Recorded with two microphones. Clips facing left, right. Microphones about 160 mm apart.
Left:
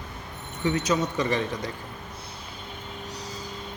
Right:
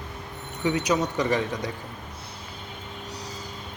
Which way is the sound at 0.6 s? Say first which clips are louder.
Right 1 dB; 15° right (ahead or behind).